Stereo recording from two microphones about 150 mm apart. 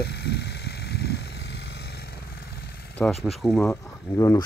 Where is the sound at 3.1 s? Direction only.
Centre (ahead or behind).